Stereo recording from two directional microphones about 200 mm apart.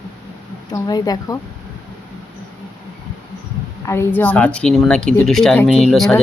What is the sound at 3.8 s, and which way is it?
A woman's voice, 15° left (ahead or behind).